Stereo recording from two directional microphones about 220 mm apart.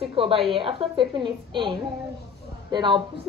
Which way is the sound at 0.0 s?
25° right (ahead or behind).